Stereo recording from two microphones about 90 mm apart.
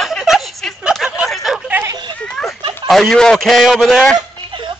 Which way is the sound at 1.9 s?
50° right (ahead or behind).